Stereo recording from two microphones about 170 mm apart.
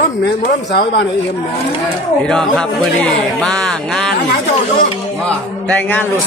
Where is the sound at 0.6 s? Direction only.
85° left.